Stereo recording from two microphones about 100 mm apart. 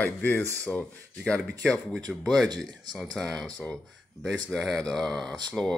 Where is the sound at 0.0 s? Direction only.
20° left (ahead or behind).